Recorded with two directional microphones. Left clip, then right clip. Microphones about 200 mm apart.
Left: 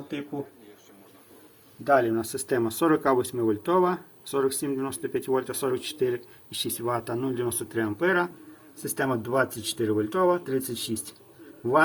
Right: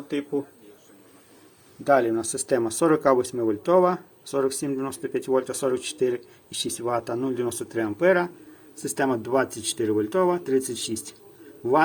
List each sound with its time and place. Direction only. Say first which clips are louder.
1.8 s speech: right 2 dB; 20° right (ahead or behind)